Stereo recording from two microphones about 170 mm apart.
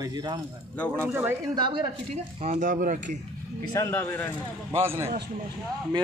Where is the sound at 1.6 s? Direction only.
25° right (ahead or behind).